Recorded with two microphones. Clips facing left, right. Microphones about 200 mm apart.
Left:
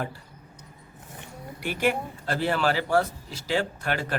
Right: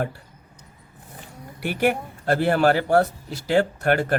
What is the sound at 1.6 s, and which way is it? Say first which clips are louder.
Speech: right 4 dB; 50° right (ahead or behind).